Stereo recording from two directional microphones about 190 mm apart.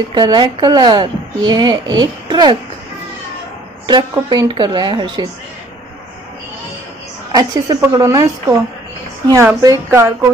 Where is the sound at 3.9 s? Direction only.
25° right (ahead or behind).